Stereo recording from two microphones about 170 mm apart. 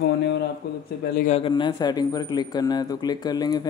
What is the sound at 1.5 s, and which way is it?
Speech, 25° left (ahead or behind).